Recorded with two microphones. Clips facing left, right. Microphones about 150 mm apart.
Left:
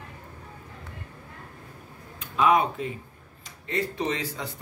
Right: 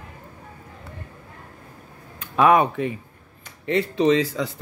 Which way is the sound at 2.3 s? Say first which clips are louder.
Right 5 dB; 60° right (ahead or behind).